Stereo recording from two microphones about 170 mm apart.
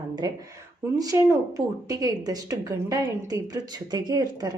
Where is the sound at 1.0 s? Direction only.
20° right (ahead or behind).